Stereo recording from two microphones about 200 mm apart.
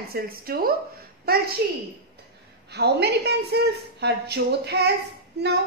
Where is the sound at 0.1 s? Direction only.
50° right (ahead or behind).